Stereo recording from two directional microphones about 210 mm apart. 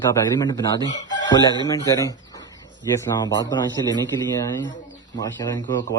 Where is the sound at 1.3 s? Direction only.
20° left (ahead or behind).